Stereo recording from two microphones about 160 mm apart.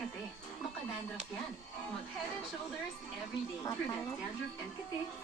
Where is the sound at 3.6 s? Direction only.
25° left (ahead or behind).